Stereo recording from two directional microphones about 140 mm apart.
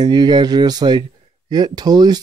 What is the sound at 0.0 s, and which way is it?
Speech, 30° right (ahead or behind).